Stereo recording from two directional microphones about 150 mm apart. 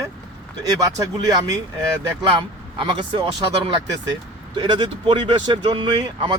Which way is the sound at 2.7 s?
30° right (ahead or behind).